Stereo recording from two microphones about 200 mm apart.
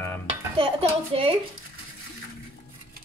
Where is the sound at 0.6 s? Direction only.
30° right (ahead or behind).